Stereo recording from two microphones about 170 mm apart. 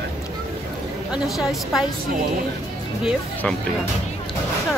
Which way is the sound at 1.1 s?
Centre (ahead or behind).